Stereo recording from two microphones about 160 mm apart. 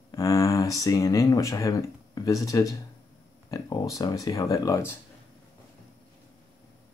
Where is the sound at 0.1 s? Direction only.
20° left (ahead or behind).